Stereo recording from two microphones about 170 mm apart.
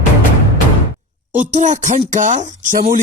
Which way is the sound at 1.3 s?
45° right (ahead or behind).